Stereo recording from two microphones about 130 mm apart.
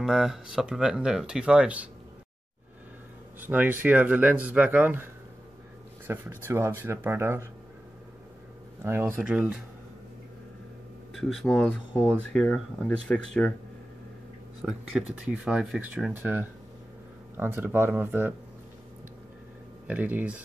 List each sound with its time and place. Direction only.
0.0 s speech: 5° right (ahead or behind)
3.3 s speech: 15° right (ahead or behind)
8.8 s speech: 15° right (ahead or behind)
11.1 s speech: centre (ahead or behind)
14.6 s speech: 5° right (ahead or behind)
19.9 s speech: 10° right (ahead or behind)